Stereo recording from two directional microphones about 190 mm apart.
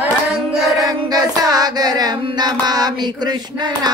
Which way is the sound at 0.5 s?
Centre (ahead or behind).